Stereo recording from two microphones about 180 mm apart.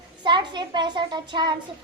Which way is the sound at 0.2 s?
25° right (ahead or behind).